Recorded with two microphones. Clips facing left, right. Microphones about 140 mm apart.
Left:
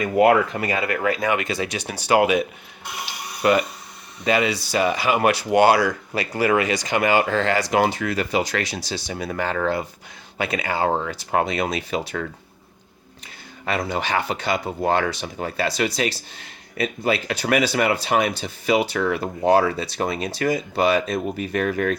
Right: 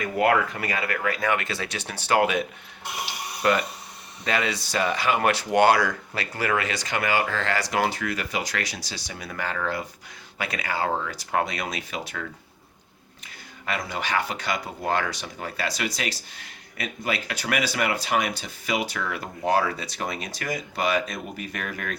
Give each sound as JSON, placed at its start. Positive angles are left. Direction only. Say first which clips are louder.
{"t": 0.0, "sound": "speech", "louder": "left 6 dB", "side_deg": 20}
{"t": 3.4, "sound": "speech", "louder": "left 4 dB", "side_deg": 10}
{"t": 13.7, "sound": "speech", "louder": "left 5 dB", "side_deg": 30}